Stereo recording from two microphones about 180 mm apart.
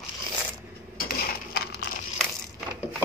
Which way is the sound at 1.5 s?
60° left (ahead or behind).